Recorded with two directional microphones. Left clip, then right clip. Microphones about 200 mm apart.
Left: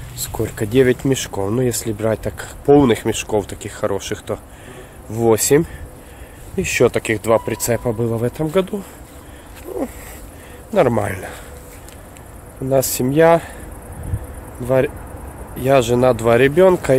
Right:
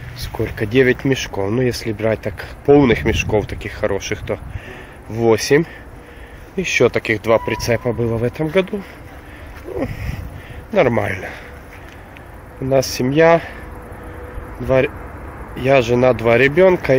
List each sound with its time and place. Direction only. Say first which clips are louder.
0.3 s speech: right 1 dB; 5° left (ahead or behind)
6.5 s speech: right 1 dB; 10° left (ahead or behind)
10.7 s speech: even; 5° left (ahead or behind)
12.6 s speech: right 1 dB; 5° left (ahead or behind)
14.6 s speech: right 1 dB; centre (ahead or behind)